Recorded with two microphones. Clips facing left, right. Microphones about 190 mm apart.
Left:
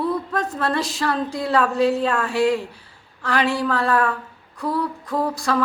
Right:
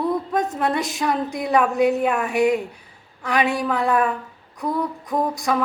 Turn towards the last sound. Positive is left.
turn(degrees=-20)  # may be behind; listen again after turning